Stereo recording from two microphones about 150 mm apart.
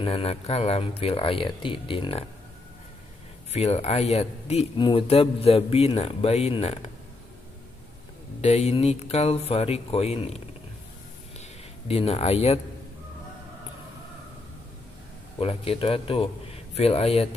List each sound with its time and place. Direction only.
0.0 s speech: 40° left (ahead or behind)
3.5 s speech: 45° left (ahead or behind)
4.7 s speech: 35° left (ahead or behind)
8.4 s speech: 45° left (ahead or behind)
11.9 s speech: 40° left (ahead or behind)
15.3 s speech: 40° left (ahead or behind)